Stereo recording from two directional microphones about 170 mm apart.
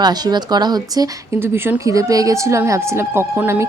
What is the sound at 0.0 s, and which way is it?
Speech, 25° right (ahead or behind).